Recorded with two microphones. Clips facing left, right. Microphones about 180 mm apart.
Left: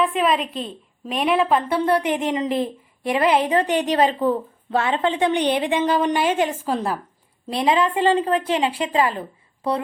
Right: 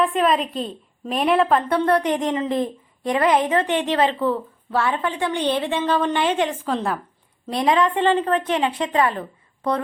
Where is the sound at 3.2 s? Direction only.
35° left (ahead or behind).